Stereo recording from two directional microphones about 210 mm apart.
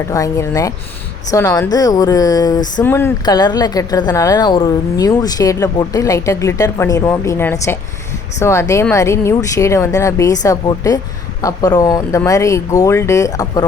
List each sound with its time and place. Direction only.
0.1 s a woman's voice: 15° left (ahead or behind)